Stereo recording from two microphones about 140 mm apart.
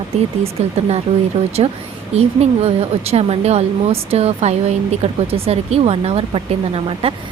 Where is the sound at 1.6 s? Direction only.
40° right (ahead or behind).